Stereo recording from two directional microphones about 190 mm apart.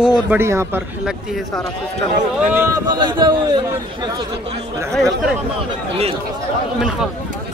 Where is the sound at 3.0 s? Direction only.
25° right (ahead or behind).